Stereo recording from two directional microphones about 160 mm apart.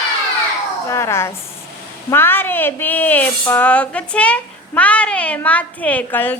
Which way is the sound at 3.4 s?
15° left (ahead or behind).